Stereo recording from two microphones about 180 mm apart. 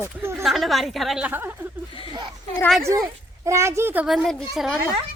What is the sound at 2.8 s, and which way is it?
Speech, 15° right (ahead or behind).